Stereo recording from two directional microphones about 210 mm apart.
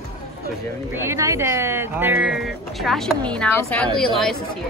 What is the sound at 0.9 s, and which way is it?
A woman's voice, 15° right (ahead or behind).